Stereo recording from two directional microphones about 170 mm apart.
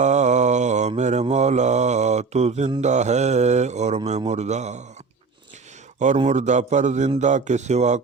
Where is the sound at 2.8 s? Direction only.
45° right (ahead or behind).